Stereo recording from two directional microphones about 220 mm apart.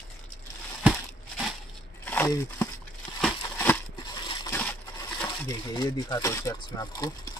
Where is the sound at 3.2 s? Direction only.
10° left (ahead or behind).